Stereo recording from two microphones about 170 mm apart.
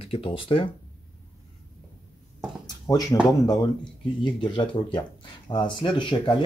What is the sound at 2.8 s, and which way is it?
Speech, 20° left (ahead or behind).